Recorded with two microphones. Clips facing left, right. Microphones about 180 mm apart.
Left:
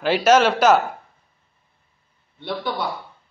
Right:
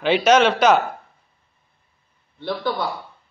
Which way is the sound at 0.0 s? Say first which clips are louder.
Even; 5° left (ahead or behind).